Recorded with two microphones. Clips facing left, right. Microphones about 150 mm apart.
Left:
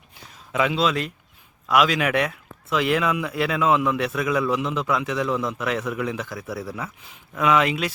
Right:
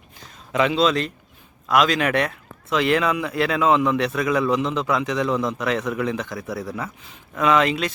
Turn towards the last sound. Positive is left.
turn(degrees=10)  # may be behind; listen again after turning